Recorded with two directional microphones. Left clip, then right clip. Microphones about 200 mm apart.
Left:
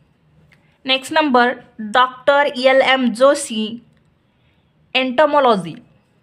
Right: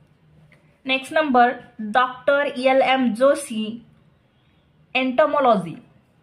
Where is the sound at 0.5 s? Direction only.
45° left (ahead or behind).